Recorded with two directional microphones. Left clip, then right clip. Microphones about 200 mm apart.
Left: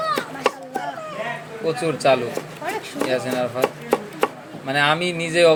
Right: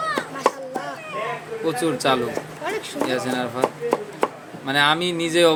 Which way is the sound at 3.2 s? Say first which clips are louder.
Left 2 dB; 10° right (ahead or behind).